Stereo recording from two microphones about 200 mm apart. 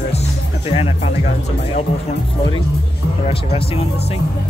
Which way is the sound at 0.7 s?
30° left (ahead or behind).